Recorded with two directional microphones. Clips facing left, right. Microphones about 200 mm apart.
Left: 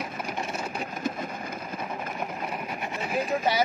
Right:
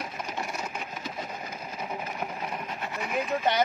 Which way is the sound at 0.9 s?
50° left (ahead or behind).